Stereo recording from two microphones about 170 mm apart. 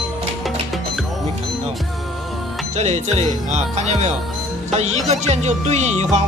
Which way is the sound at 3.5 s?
40° right (ahead or behind).